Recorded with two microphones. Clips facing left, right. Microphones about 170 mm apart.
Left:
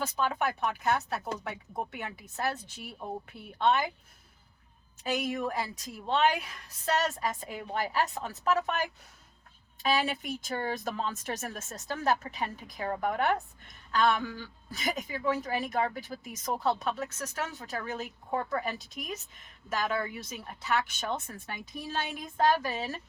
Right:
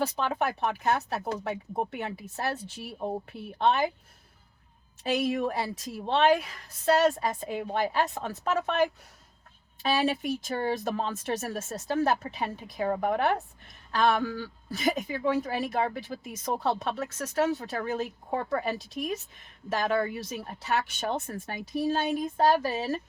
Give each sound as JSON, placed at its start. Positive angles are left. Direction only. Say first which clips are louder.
{"t": 0.0, "sound": "speech", "louder": "right 2 dB", "side_deg": -30}
{"t": 5.0, "sound": "a woman's voice", "louder": "right 4 dB", "side_deg": -30}
{"t": 9.8, "sound": "speech", "louder": "right 3 dB", "side_deg": -35}
{"t": 21.5, "sound": "speech", "louder": "right 8 dB", "side_deg": -45}
{"t": 22.4, "sound": "speech", "louder": "right 1 dB", "side_deg": -30}